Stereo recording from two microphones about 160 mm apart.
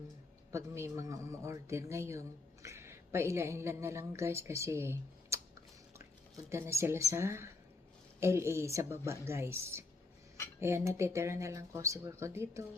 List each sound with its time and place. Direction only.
0.5 s speech: 20° right (ahead or behind)